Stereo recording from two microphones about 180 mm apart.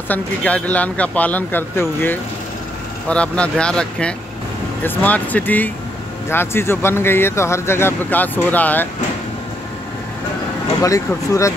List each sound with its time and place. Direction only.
0.1 s speech: 10° left (ahead or behind)
10.8 s speech: 15° left (ahead or behind)